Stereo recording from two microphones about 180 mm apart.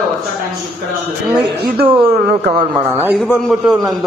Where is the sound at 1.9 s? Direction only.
30° right (ahead or behind).